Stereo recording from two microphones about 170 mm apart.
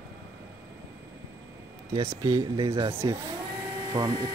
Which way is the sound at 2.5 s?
30° right (ahead or behind).